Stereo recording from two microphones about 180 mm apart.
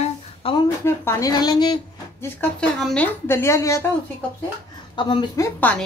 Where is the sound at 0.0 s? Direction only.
30° left (ahead or behind).